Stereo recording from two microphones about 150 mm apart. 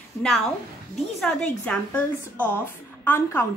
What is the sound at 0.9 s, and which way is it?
A woman's voice, 5° left (ahead or behind).